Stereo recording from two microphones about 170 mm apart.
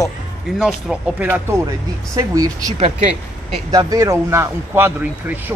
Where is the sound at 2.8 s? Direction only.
40° right (ahead or behind).